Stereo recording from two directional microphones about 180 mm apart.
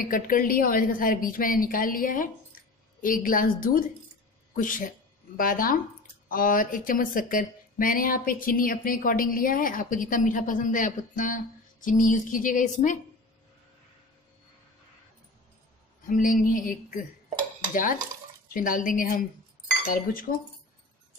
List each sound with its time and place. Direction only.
0.0 s a woman's voice: 50° left (ahead or behind)
16.1 s a woman's voice: 50° left (ahead or behind)
18.5 s a woman's voice: 50° left (ahead or behind)